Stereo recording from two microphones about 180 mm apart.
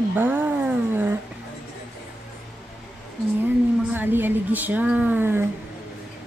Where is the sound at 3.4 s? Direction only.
10° right (ahead or behind).